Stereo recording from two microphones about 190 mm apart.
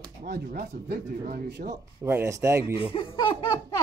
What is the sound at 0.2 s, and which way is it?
Speech, 50° right (ahead or behind).